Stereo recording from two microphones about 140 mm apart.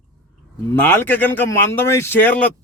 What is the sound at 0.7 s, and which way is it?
A man's voice, 15° left (ahead or behind).